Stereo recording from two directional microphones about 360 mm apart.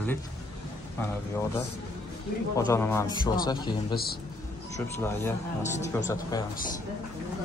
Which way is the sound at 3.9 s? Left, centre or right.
Left.